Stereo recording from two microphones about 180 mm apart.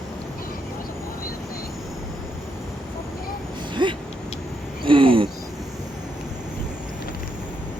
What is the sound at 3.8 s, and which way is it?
Vehicle, 25° right (ahead or behind).